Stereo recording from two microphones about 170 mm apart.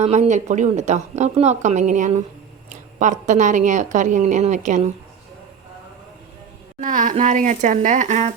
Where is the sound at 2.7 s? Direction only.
50° right (ahead or behind).